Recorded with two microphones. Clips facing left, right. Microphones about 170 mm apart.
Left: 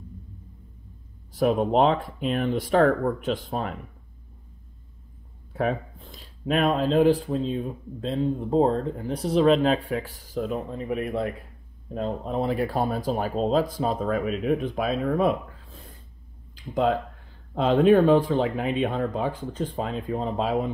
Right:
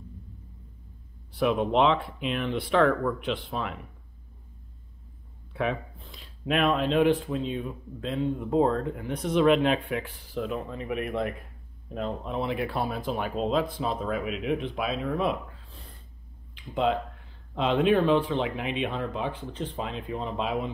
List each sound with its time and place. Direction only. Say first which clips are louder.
1.3 s speech: left 3 dB; 40° left (ahead or behind)
5.5 s speech: left 3 dB; 40° left (ahead or behind)